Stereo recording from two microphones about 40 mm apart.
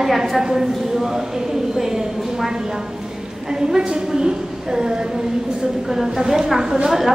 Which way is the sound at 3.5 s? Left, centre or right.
Centre.